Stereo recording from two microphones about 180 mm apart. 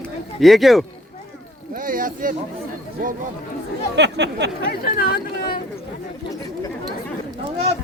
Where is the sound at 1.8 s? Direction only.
50° right (ahead or behind).